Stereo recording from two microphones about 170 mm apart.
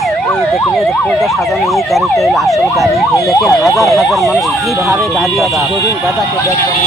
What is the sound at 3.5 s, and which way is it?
Speech, 20° left (ahead or behind).